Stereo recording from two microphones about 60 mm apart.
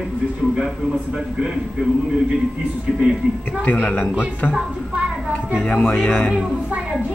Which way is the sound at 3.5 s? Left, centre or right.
Left.